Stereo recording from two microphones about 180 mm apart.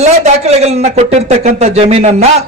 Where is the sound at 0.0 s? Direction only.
40° right (ahead or behind).